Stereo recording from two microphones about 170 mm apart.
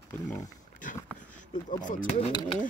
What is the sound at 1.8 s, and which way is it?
Speech, 45° left (ahead or behind).